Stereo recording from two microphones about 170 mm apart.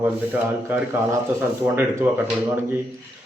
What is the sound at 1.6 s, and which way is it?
A man's voice, 10° right (ahead or behind).